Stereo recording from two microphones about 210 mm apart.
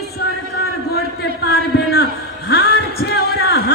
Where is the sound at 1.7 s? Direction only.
50° left (ahead or behind).